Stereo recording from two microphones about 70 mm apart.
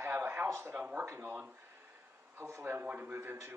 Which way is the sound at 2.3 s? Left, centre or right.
Right.